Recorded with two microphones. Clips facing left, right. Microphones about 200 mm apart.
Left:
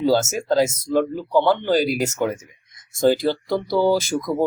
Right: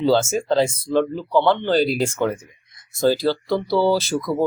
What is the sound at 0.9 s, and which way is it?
Speech, 10° left (ahead or behind).